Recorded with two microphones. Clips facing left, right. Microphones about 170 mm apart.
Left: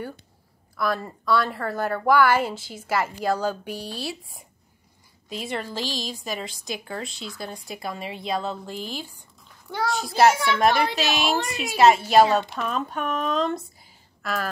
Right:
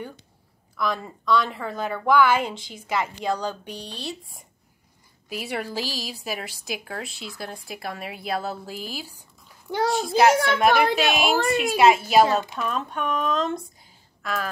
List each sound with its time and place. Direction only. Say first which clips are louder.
0.7 s a woman's voice: left 1 dB; 5° left (ahead or behind)
5.3 s a woman's voice: right 1 dB; 10° right (ahead or behind)
10.7 s a woman's voice: right 3 dB; 55° right (ahead or behind)
11.7 s a woman's voice: left 2 dB; centre (ahead or behind)